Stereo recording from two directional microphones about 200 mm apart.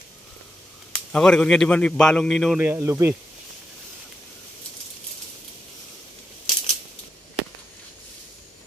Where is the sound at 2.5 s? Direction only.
10° right (ahead or behind).